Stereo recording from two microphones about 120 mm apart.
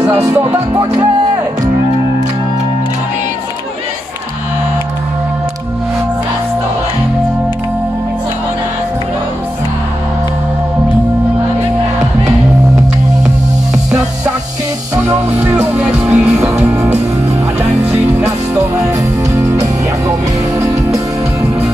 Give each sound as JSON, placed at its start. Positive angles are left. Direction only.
{"t": 0.1, "sound": "music", "side_deg": -25}
{"t": 15.0, "sound": "music", "side_deg": -15}
{"t": 15.7, "sound": "music", "side_deg": -5}
{"t": 18.5, "sound": "music", "side_deg": -25}